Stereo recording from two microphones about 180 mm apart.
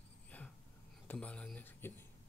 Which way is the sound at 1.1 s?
5° left (ahead or behind).